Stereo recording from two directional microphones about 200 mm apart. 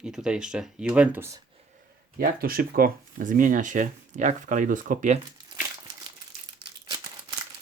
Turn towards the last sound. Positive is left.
turn(degrees=-25)  # may be behind; listen again after turning